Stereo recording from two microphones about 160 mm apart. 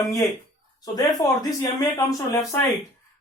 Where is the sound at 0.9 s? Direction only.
20° left (ahead or behind).